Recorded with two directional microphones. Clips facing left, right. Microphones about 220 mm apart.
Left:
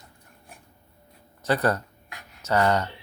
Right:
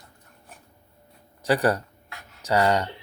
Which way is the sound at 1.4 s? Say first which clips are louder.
Right 2 dB; 15° right (ahead or behind).